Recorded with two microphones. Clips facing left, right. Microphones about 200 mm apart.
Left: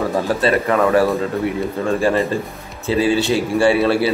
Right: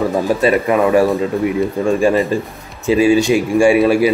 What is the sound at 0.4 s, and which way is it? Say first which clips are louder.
A man's voice: right 2 dB; 15° right (ahead or behind).